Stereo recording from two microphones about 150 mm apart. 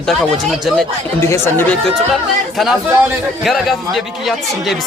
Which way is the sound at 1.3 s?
15° left (ahead or behind).